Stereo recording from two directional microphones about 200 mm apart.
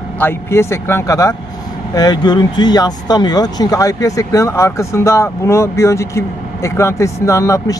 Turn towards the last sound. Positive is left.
turn(degrees=15)  # may be behind; listen again after turning